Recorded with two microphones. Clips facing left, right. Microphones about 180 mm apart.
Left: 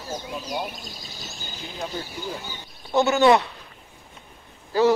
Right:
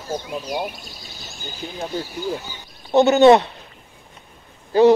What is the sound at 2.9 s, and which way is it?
Speech, 20° right (ahead or behind).